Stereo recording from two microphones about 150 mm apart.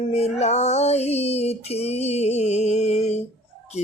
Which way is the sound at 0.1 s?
45° left (ahead or behind).